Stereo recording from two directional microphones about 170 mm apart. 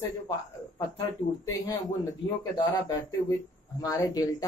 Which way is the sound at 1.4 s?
20° left (ahead or behind).